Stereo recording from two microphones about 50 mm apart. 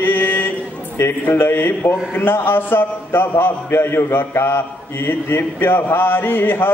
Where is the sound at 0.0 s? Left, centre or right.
Left.